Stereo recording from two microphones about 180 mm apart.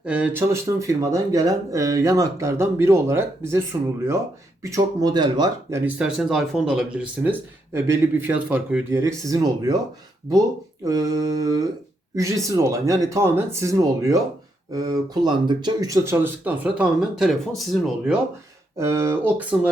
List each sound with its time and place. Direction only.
0.0 s speech: 5° right (ahead or behind); by 5.8 s 25° right (ahead or behind)
5.8 s speech: 5° right (ahead or behind); by 9.7 s 20° right (ahead or behind)
10.8 s speech: 20° right (ahead or behind); by 18.2 s centre (ahead or behind)
18.8 s speech: 15° right (ahead or behind)